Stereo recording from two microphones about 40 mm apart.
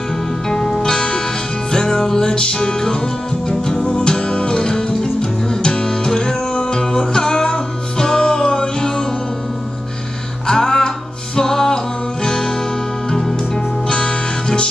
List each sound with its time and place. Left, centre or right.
0.5 s music: centre
10.4 s music: centre
13.8 s music: left